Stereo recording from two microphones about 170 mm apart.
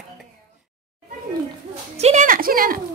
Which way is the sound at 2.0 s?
45° right (ahead or behind).